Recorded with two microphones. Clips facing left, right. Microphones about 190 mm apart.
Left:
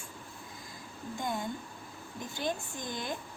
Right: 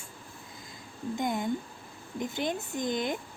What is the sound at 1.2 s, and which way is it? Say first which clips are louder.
A woman's voice: right 5 dB; 20° right (ahead or behind).